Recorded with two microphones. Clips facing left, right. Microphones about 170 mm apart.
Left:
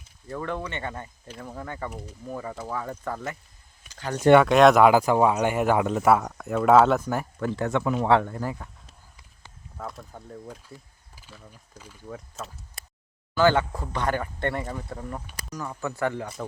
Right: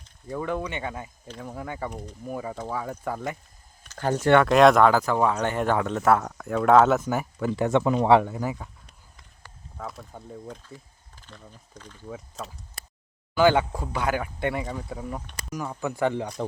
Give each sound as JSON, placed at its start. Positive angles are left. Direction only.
{"t": 0.3, "sound": "speech", "side_deg": -10}
{"t": 3.9, "sound": "a sound", "side_deg": 10}
{"t": 4.4, "sound": "speech", "side_deg": 0}
{"t": 7.7, "sound": "speech", "side_deg": -25}
{"t": 8.0, "sound": "speech", "side_deg": -10}
{"t": 9.7, "sound": "speech", "side_deg": 0}
{"t": 11.1, "sound": "speech", "side_deg": 5}
{"t": 12.0, "sound": "speech", "side_deg": -5}
{"t": 13.3, "sound": "speech", "side_deg": -15}